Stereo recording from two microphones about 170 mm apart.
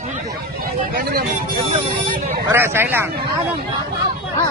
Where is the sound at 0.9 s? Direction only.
60° right (ahead or behind).